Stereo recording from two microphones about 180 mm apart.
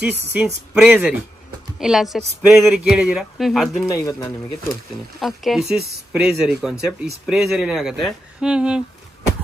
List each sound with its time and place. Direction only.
0.0 s speech: 10° right (ahead or behind)
3.9 s a man's voice: 15° left (ahead or behind)
5.2 s speech: centre (ahead or behind)